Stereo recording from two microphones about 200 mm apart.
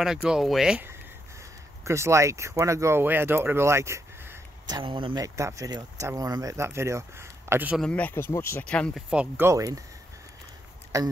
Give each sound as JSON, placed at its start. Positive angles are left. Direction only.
{"t": 0.0, "sound": "speech", "side_deg": -5}
{"t": 7.8, "sound": "speech", "side_deg": 5}
{"t": 9.1, "sound": "speech", "side_deg": -10}
{"t": 10.9, "sound": "speech", "side_deg": -15}